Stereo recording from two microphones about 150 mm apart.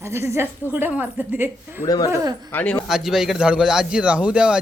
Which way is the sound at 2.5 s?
10° left (ahead or behind).